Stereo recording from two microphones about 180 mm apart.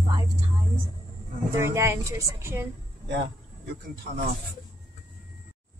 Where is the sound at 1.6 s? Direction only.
15° right (ahead or behind).